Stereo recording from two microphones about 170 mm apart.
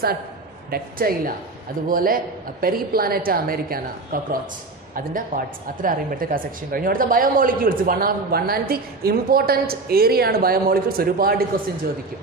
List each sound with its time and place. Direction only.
0.7 s speech: 60° right (ahead or behind)